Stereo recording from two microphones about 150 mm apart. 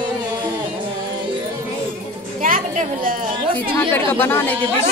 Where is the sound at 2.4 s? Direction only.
65° right (ahead or behind).